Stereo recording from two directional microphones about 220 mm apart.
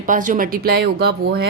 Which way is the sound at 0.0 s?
35° right (ahead or behind).